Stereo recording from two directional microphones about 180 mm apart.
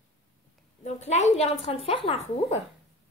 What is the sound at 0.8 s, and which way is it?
Speech, 40° left (ahead or behind).